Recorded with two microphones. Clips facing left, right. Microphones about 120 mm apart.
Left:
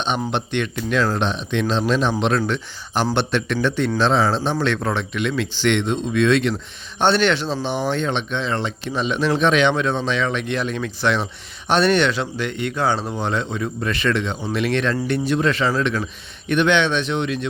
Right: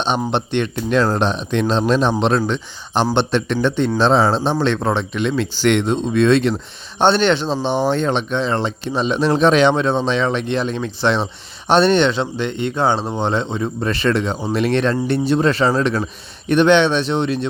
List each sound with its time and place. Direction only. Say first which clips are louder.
0.3 s speech: right 3 dB; 30° right (ahead or behind)